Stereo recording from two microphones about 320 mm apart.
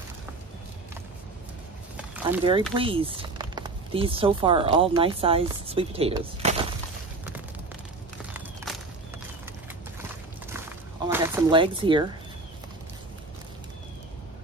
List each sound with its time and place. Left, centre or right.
2.0 s a sound: centre
2.7 s speech: centre
11.1 s speech: centre